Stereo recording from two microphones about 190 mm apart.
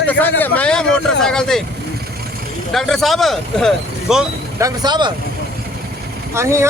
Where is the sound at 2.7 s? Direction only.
Centre (ahead or behind).